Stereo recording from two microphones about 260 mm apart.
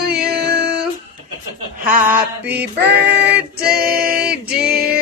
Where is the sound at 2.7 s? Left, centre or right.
Right.